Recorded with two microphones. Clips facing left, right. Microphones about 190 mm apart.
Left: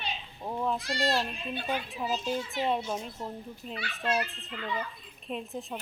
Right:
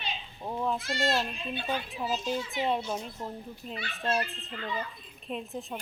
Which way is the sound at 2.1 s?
Centre (ahead or behind).